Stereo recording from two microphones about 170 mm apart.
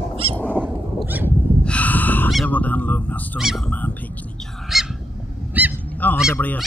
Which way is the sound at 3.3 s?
Centre (ahead or behind).